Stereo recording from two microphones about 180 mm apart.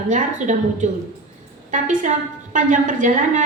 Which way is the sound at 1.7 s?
45° right (ahead or behind).